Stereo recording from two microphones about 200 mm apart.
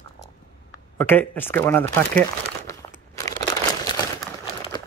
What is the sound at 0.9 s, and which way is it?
Speech, 10° left (ahead or behind).